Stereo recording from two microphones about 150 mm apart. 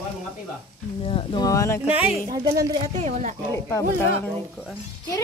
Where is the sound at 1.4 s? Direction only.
20° left (ahead or behind).